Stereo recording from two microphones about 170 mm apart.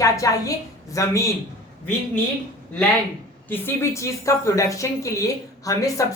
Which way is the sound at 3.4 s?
15° left (ahead or behind).